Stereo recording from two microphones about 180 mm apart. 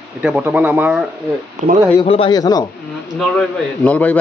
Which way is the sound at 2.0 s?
30° left (ahead or behind).